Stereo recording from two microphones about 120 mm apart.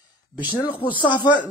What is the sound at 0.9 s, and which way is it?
Speech, 40° left (ahead or behind).